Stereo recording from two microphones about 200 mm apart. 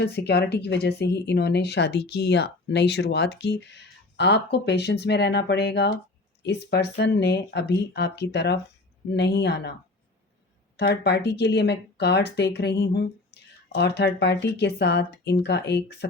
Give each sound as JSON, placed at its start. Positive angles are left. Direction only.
{"t": 0.0, "sound": "a woman's voice", "side_deg": 55}
{"t": 10.8, "sound": "a woman's voice", "side_deg": 55}